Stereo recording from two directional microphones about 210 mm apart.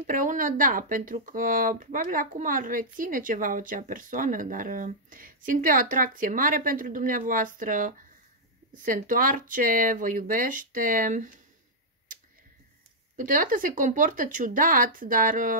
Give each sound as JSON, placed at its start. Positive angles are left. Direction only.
{"t": 0.0, "sound": "speech", "side_deg": -40}
{"t": 13.1, "sound": "speech", "side_deg": -40}